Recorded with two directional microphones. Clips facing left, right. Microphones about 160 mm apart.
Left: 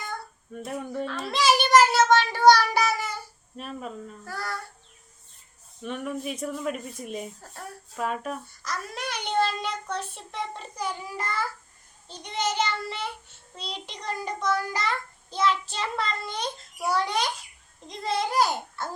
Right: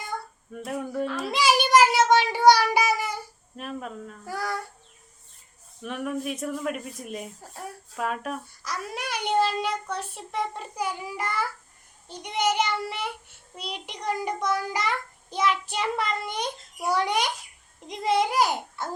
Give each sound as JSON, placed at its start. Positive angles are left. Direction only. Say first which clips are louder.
{"t": 0.5, "sound": "a child's voice", "louder": "right 2 dB", "side_deg": 0}
{"t": 3.6, "sound": "speech", "louder": "right 1 dB", "side_deg": 0}
{"t": 4.3, "sound": "child singing", "louder": "right 4 dB", "side_deg": -15}
{"t": 5.8, "sound": "speech", "louder": "right 1 dB", "side_deg": 0}
{"t": 12.0, "sound": "child singing", "louder": "right 4 dB", "side_deg": -15}